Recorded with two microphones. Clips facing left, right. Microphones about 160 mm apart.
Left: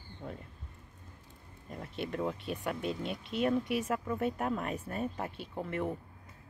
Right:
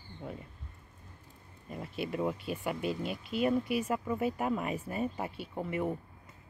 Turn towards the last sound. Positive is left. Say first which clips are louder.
# right 1 dB
turn(degrees=-5)  # may be behind; listen again after turning